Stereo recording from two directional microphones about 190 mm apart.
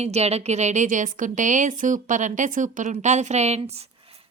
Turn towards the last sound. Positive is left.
turn(degrees=-30)  # may be behind; listen again after turning